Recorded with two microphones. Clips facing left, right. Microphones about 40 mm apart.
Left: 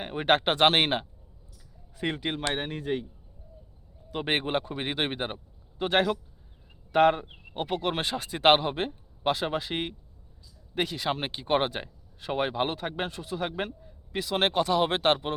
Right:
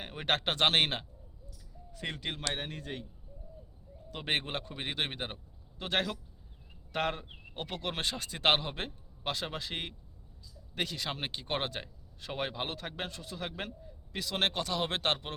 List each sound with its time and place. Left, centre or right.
0.0 s speech: centre
4.1 s speech: centre